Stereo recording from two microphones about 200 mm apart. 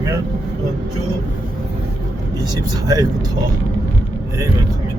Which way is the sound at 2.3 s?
20° right (ahead or behind).